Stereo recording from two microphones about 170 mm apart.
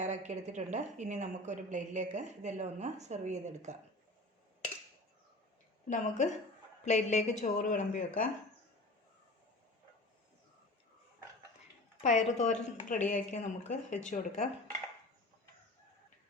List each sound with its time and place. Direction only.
0.0 s a woman's voice: 40° right (ahead or behind)
5.9 s a woman's voice: 45° left (ahead or behind)
12.0 s a woman's voice: 45° left (ahead or behind)